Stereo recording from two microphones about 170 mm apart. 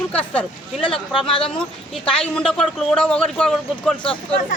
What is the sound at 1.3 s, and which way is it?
Speech, 30° left (ahead or behind).